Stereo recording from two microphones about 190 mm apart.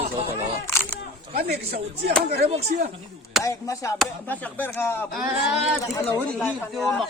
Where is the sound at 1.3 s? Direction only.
55° right (ahead or behind).